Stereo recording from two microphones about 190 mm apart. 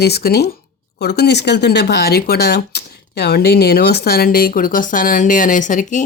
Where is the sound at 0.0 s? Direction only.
55° left (ahead or behind).